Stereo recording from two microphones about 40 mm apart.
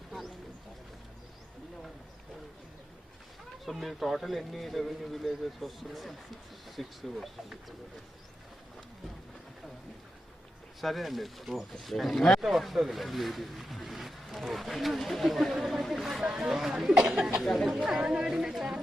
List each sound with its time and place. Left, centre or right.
3.7 s speech: centre
10.8 s speech: centre
16.2 s speech: centre
17.4 s speech: centre
18.0 s a woman's voice: centre